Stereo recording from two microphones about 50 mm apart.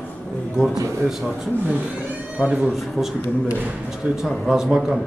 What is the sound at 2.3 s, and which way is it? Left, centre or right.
Speech, right.